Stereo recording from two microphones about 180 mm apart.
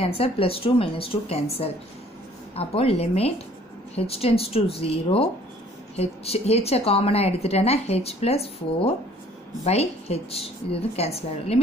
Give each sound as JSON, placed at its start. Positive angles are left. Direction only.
{"t": 0.0, "sound": "a woman's voice", "side_deg": 30}
{"t": 9.7, "sound": "a woman's voice", "side_deg": 35}